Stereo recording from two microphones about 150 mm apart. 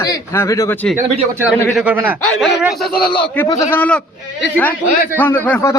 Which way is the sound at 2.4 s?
Centre (ahead or behind).